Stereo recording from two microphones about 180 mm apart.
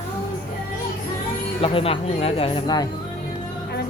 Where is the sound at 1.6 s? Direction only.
30° left (ahead or behind).